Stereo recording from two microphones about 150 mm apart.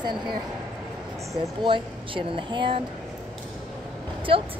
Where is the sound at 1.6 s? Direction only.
35° right (ahead or behind).